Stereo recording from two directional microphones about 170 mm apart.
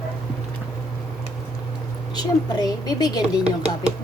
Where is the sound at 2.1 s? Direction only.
25° left (ahead or behind).